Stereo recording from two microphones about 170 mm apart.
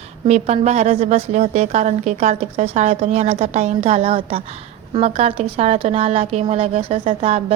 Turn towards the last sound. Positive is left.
turn(degrees=-35)  # may be behind; listen again after turning